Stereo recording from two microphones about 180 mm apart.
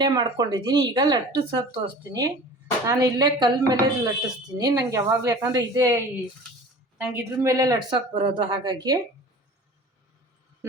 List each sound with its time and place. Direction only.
0.0 s speech: 20° right (ahead or behind)
7.1 s speech: 15° right (ahead or behind)